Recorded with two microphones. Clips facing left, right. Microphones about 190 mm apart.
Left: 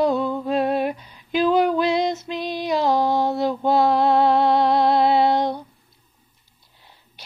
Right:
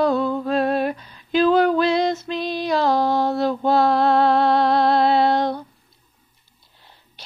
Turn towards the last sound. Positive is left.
turn(degrees=15)  # may be behind; listen again after turning